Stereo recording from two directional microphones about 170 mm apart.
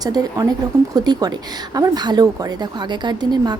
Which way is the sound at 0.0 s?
20° right (ahead or behind).